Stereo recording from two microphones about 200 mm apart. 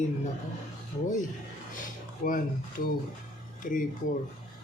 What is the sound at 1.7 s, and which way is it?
Speech, 40° left (ahead or behind).